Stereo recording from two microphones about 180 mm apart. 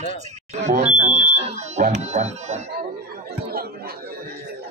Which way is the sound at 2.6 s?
60° right (ahead or behind).